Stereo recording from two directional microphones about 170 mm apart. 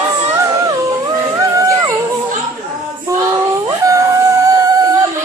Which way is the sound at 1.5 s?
20° right (ahead or behind).